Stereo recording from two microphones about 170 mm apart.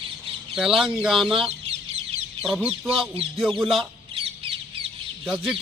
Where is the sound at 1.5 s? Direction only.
40° right (ahead or behind).